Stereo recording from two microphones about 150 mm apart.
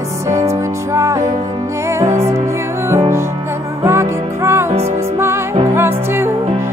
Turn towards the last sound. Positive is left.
turn(degrees=-15)  # may be behind; listen again after turning